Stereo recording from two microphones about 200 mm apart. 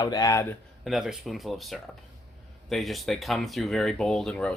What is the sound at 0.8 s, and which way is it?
Speech, centre (ahead or behind).